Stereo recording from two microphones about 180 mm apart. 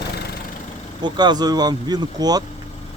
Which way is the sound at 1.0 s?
25° right (ahead or behind).